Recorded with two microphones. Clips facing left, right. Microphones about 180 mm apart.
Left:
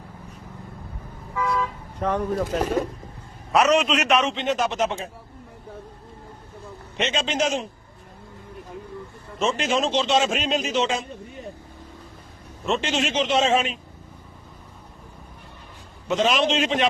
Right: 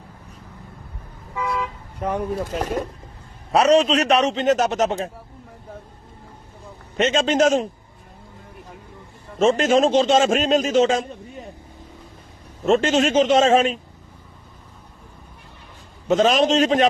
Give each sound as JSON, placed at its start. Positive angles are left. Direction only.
{"t": 1.5, "sound": "car", "side_deg": -20}
{"t": 3.5, "sound": "a man's voice", "side_deg": -35}
{"t": 6.9, "sound": "a man's voice", "side_deg": -45}
{"t": 9.4, "sound": "a man's voice", "side_deg": -45}
{"t": 12.6, "sound": "a man's voice", "side_deg": -45}
{"t": 16.0, "sound": "a man's voice", "side_deg": -45}